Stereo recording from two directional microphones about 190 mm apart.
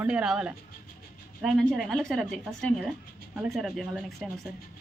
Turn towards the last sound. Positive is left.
turn(degrees=0)  # may be behind; listen again after turning